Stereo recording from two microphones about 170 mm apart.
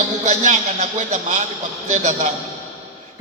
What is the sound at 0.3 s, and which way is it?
A man's voice, 40° right (ahead or behind).